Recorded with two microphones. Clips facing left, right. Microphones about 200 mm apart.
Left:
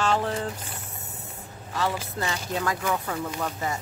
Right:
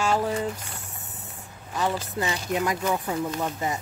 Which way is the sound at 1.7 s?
15° right (ahead or behind).